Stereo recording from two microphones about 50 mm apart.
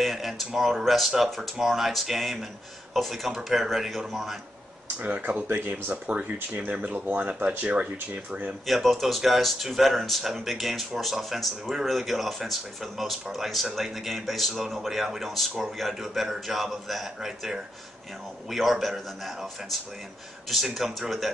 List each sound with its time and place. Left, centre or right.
0.0 s speech: centre
5.0 s speech: right
8.6 s speech: centre